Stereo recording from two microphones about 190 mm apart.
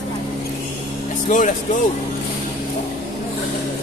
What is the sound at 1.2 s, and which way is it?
Speech, 45° left (ahead or behind).